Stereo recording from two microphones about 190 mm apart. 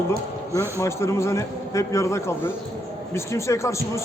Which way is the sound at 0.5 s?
15° left (ahead or behind).